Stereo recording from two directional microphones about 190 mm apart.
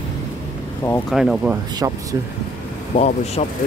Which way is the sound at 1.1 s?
Centre (ahead or behind).